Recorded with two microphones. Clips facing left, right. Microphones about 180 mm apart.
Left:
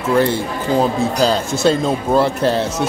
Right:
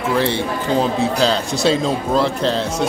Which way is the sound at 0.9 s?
Centre (ahead or behind).